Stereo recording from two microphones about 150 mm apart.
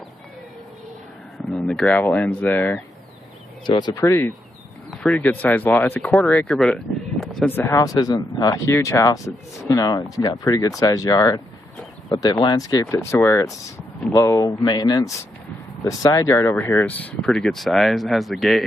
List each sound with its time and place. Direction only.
1.5 s speech: 5° left (ahead or behind)
3.6 s speech: 30° left (ahead or behind)
4.9 s speech: 5° left (ahead or behind)
6.5 s a sound: 5° left (ahead or behind)
7.4 s speech: 15° left (ahead or behind)
17.3 s speech: centre (ahead or behind)